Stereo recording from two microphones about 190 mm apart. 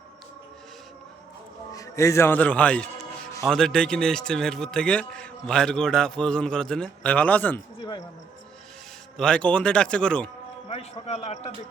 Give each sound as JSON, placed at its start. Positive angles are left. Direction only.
{"t": 1.7, "sound": "a man's voice", "side_deg": 15}
{"t": 7.8, "sound": "speech", "side_deg": 20}
{"t": 9.1, "sound": "a man's voice", "side_deg": 5}
{"t": 10.7, "sound": "a man's voice", "side_deg": 30}